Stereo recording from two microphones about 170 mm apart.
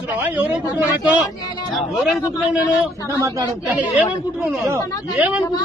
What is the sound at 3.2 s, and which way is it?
Speech, 20° right (ahead or behind).